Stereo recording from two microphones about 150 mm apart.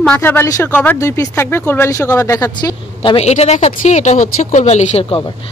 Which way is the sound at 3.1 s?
45° left (ahead or behind).